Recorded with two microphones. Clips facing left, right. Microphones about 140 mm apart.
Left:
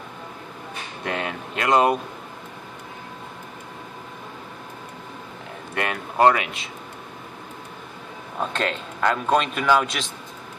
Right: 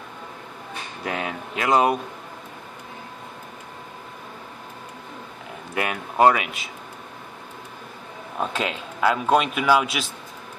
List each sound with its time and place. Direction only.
1.0 s speech: 5° right (ahead or behind)
5.8 s speech: 5° right (ahead or behind)
8.4 s a man's voice: 5° right (ahead or behind)